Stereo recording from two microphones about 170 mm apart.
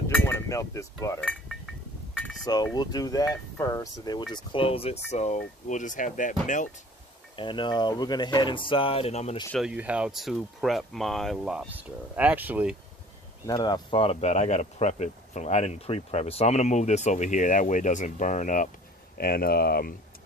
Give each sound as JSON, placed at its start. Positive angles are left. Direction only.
{"t": 0.1, "sound": "a sound", "side_deg": 15}
{"t": 1.2, "sound": "a sound", "side_deg": 5}
{"t": 2.4, "sound": "speech", "side_deg": 25}
{"t": 7.3, "sound": "speech", "side_deg": 30}
{"t": 9.6, "sound": "speech", "side_deg": -5}
{"t": 13.5, "sound": "speech", "side_deg": 25}
{"t": 19.1, "sound": "speech", "side_deg": 60}